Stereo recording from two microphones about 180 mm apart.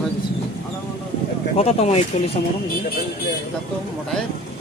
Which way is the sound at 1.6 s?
35° left (ahead or behind).